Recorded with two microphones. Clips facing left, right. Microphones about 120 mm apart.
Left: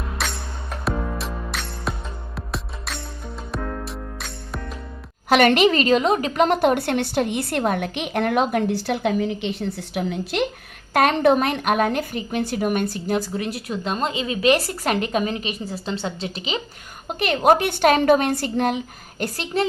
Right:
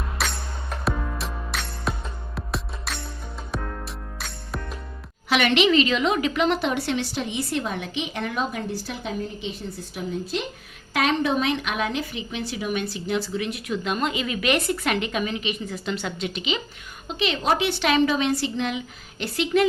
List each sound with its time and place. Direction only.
0.2 s music: centre (ahead or behind)
5.3 s a woman's voice: 45° left (ahead or behind); by 10.4 s 75° left (ahead or behind)
10.9 s a woman's voice: 55° left (ahead or behind); by 16.6 s 35° left (ahead or behind)
17.1 s a woman's voice: 50° left (ahead or behind)
19.2 s a woman's voice: 40° left (ahead or behind)